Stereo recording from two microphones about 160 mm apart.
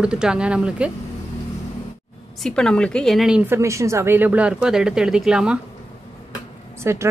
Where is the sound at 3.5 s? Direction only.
20° right (ahead or behind).